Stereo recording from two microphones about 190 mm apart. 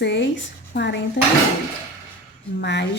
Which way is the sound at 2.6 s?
65° left (ahead or behind).